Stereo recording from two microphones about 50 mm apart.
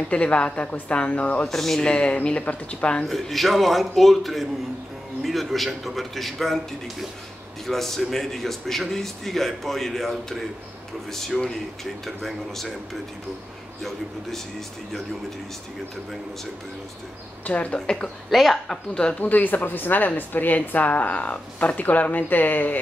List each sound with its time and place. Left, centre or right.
0.1 s a woman's voice: left
1.5 s a woman's voice: centre
1.9 s a woman's voice: left
3.1 s a man's voice: centre
17.5 s a woman's voice: left
17.7 s a woman's voice: centre
18.3 s a man's voice: centre
18.7 s a woman's voice: centre
19.1 s a woman's voice: left